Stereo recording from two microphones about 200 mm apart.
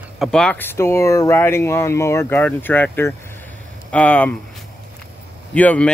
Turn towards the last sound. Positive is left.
turn(degrees=5)  # may be behind; listen again after turning